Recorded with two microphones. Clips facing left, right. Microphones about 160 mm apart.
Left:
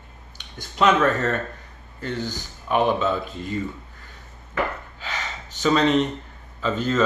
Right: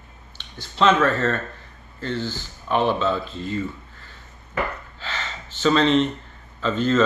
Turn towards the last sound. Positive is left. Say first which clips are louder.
# right 2 dB
turn(degrees=10)  # may be behind; listen again after turning